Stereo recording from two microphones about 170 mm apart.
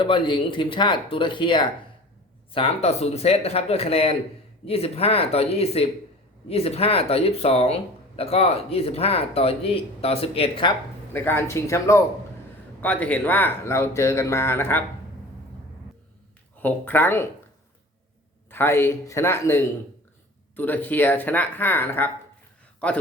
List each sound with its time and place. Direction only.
0.0 s speech: 30° left (ahead or behind)
11.1 s speech: 15° left (ahead or behind)
16.6 s speech: 10° left (ahead or behind)
18.5 s speech: 15° left (ahead or behind)